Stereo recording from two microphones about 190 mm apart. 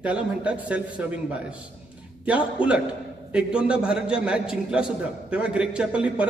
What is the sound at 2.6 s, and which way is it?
Speech, 25° left (ahead or behind).